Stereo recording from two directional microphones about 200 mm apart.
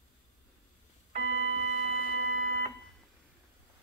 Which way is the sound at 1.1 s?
35° right (ahead or behind).